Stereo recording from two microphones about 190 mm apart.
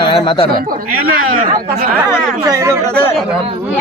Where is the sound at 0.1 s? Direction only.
25° left (ahead or behind).